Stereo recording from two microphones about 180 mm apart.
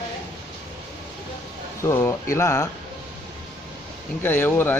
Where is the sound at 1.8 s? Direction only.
15° left (ahead or behind).